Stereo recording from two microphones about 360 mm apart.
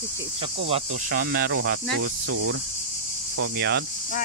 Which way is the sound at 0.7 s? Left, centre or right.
Right.